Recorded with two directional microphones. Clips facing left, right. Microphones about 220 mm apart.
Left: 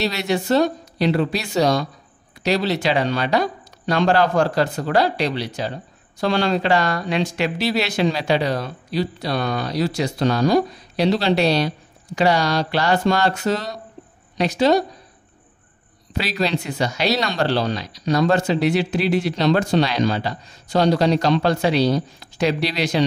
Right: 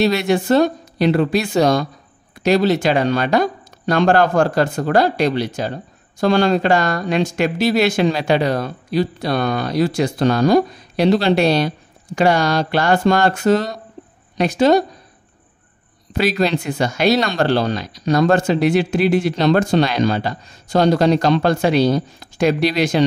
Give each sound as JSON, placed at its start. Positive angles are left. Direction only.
{"t": 0.0, "sound": "a woman's voice", "side_deg": -50}
{"t": 16.1, "sound": "speech", "side_deg": -50}